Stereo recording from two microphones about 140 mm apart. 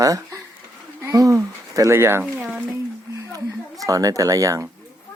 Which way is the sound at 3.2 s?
25° right (ahead or behind).